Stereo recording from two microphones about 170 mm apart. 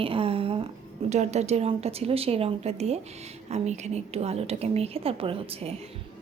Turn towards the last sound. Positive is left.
turn(degrees=-35)  # may be behind; listen again after turning